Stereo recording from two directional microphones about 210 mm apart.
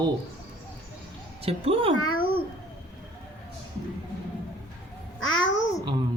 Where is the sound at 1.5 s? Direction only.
25° right (ahead or behind).